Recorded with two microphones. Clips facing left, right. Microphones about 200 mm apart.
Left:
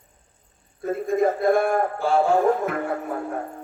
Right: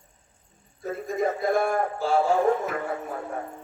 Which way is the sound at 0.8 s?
55° left (ahead or behind).